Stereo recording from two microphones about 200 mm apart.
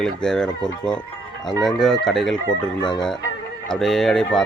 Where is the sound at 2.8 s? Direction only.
20° left (ahead or behind).